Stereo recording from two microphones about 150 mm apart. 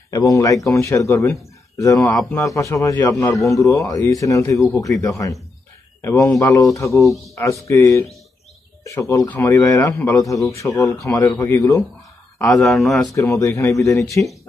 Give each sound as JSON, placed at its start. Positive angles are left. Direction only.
{"t": 0.1, "sound": "speech", "side_deg": 20}
{"t": 2.1, "sound": "speech", "side_deg": 0}
{"t": 2.4, "sound": "speech", "side_deg": 20}
{"t": 12.4, "sound": "speech", "side_deg": 0}
{"t": 13.1, "sound": "speech", "side_deg": 20}